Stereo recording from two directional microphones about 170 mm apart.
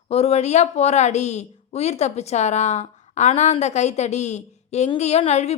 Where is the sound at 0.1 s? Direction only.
35° left (ahead or behind).